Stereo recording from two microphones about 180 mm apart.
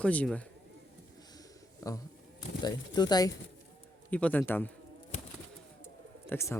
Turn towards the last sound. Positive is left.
turn(degrees=15)  # may be behind; listen again after turning